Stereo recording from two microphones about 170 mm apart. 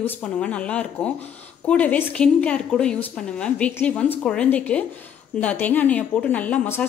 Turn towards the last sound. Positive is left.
turn(degrees=10)  # may be behind; listen again after turning